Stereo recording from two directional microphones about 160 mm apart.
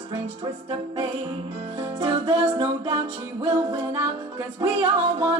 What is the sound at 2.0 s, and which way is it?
Music, 25° right (ahead or behind).